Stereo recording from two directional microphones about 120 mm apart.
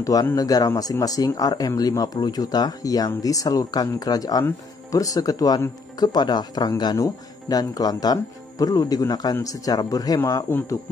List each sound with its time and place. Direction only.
0.0 s speech: 30° left (ahead or behind)